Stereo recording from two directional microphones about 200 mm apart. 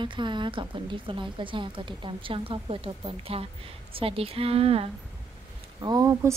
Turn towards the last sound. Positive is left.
turn(degrees=-20)  # may be behind; listen again after turning